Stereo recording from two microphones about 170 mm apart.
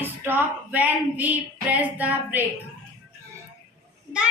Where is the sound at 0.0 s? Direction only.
10° right (ahead or behind).